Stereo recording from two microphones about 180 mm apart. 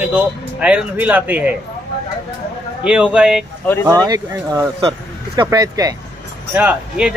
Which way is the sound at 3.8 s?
20° right (ahead or behind).